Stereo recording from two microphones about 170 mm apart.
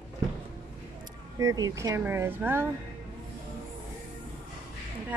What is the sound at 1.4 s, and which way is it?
A woman's voice, 20° right (ahead or behind).